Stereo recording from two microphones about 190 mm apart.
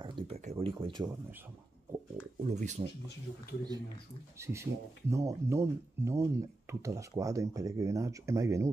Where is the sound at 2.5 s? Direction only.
40° right (ahead or behind).